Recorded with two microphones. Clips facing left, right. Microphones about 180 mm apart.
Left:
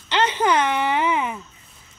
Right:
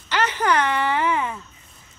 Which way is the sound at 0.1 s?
20° left (ahead or behind).